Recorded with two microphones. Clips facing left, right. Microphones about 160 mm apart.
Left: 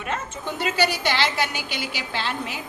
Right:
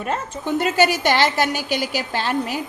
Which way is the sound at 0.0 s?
40° right (ahead or behind).